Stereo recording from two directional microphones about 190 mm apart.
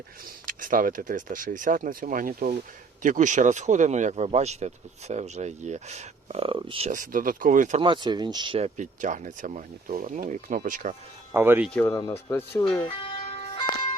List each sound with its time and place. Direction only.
0.4 s speech: 45° right (ahead or behind); by 6.9 s 30° right (ahead or behind)
6.9 s speech: 45° right (ahead or behind)
7.8 s speech: 25° right (ahead or behind); by 10.9 s 45° right (ahead or behind)
11.3 s speech: 10° right (ahead or behind)
11.7 s speech: 15° left (ahead or behind)
12.8 s music: 30° left (ahead or behind)